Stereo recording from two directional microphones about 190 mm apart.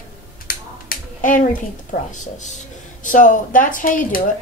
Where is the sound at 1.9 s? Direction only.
40° left (ahead or behind).